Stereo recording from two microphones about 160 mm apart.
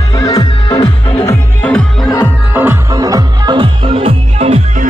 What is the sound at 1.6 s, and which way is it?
Music, 5° left (ahead or behind).